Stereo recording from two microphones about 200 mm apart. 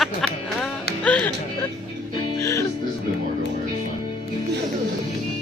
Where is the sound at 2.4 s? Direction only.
15° left (ahead or behind).